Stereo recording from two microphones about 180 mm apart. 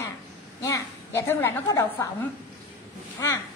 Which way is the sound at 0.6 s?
15° left (ahead or behind).